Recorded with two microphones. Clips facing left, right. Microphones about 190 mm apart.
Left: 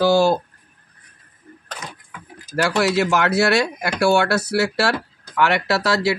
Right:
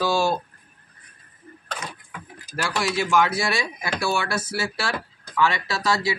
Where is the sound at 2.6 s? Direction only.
65° left (ahead or behind).